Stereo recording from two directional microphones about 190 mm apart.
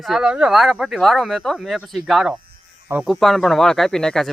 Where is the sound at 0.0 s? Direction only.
Centre (ahead or behind).